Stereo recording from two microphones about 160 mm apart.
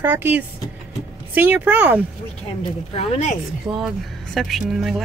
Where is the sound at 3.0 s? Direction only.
45° left (ahead or behind).